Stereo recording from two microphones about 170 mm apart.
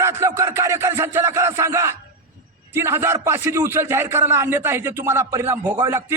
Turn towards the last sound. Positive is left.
turn(degrees=-15)  # may be behind; listen again after turning